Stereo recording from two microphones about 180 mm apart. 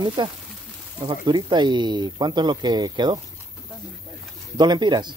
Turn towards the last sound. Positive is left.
turn(degrees=-25)  # may be behind; listen again after turning